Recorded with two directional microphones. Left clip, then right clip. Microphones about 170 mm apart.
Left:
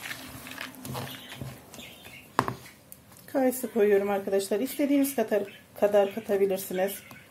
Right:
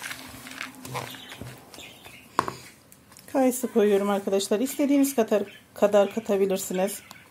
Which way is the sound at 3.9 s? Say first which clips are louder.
Right 1 dB; 50° right (ahead or behind).